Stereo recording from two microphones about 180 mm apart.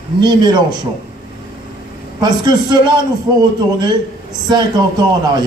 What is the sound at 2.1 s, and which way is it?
A man's voice, 25° right (ahead or behind).